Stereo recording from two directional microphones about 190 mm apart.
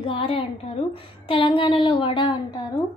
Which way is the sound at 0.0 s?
30° left (ahead or behind).